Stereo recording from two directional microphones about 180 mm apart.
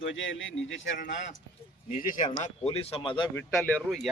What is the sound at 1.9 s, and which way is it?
Speech, 45° left (ahead or behind).